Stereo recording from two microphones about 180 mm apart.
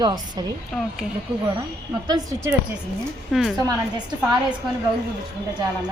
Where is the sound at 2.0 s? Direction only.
20° right (ahead or behind).